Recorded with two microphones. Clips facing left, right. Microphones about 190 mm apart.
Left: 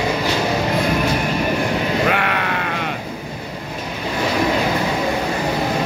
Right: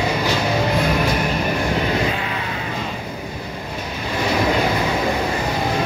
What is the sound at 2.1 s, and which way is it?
Sheep, 70° left (ahead or behind).